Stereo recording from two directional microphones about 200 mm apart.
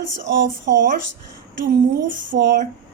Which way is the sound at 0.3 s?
60° right (ahead or behind).